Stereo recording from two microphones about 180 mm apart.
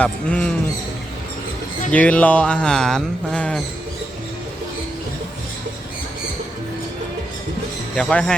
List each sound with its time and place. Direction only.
0.0 s speech: 5° left (ahead or behind)
1.9 s speech: 5° left (ahead or behind)
7.9 s speech: 5° left (ahead or behind)